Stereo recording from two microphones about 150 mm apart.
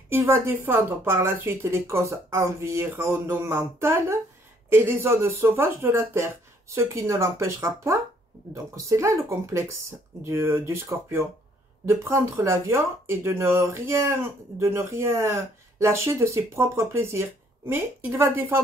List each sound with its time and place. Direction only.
0.1 s speech: 15° right (ahead or behind)